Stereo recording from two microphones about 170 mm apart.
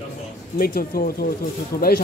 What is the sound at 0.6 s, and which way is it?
A man's voice, 60° left (ahead or behind).